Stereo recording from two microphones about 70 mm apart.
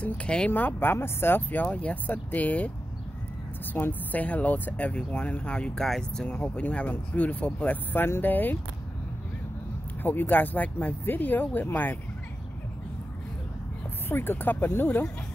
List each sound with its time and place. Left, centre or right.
0.0 s speech: centre
0.5 s speech: left
3.7 s speech: left
10.0 s speech: left
14.0 s speech: left